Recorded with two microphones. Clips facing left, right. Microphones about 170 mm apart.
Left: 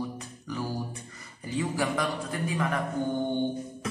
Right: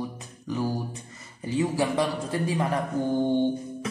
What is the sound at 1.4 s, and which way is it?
A woman's voice, 25° right (ahead or behind).